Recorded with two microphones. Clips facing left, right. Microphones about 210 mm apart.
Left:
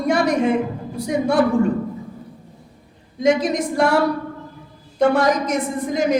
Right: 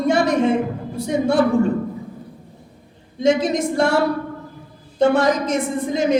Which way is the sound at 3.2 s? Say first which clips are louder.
Even; 25° right (ahead or behind).